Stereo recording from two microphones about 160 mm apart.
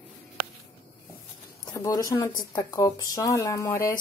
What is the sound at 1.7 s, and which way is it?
Speech, 20° left (ahead or behind).